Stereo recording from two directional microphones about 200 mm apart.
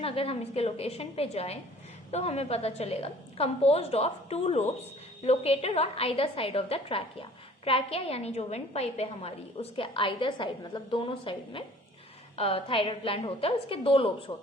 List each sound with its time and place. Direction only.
0.0 s a woman's voice: 30° left (ahead or behind)